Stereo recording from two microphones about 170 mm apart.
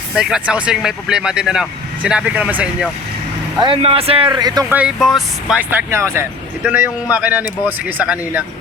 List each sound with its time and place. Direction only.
0.1 s speech: 5° right (ahead or behind)
3.6 s speech: 30° right (ahead or behind)
4.7 s speech: 5° right (ahead or behind)
5.9 s speech: 15° right (ahead or behind)